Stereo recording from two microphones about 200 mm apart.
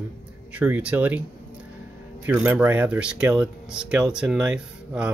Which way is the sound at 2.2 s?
5° right (ahead or behind).